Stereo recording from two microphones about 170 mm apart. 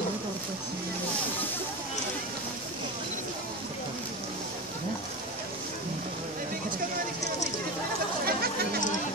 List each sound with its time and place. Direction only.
8.3 s chatter: 65° right (ahead or behind)